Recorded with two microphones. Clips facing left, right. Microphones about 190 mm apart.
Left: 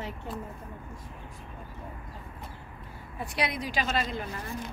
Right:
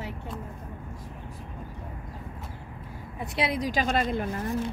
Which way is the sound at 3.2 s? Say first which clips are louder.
Right 3 dB; 25° right (ahead or behind).